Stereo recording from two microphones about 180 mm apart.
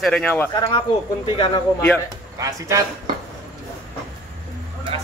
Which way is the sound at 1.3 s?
25° left (ahead or behind).